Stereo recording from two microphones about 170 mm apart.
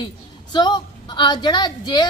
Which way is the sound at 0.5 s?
25° left (ahead or behind).